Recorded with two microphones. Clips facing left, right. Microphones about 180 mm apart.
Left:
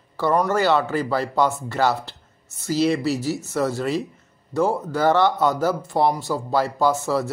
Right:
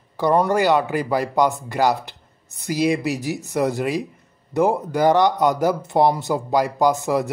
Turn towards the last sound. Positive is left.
turn(degrees=-15)  # may be behind; listen again after turning